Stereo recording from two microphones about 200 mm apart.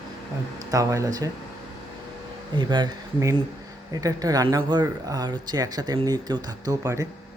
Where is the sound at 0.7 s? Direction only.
15° right (ahead or behind).